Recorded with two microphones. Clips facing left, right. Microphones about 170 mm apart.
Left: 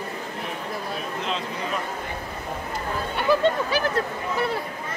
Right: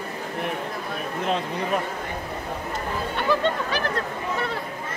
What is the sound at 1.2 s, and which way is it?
Speech, 55° right (ahead or behind).